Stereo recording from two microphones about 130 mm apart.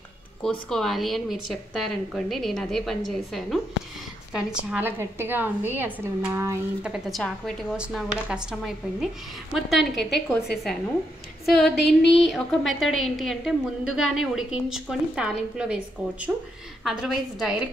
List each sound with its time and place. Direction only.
0.4 s a woman's voice: 5° left (ahead or behind); by 6.6 s 20° right (ahead or behind)
6.8 s a woman's voice: 5° right (ahead or behind)